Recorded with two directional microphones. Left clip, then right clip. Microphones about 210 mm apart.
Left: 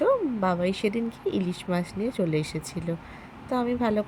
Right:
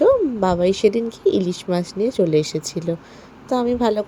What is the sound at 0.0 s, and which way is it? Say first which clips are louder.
A woman's voice: right 8 dB; 15° right (ahead or behind).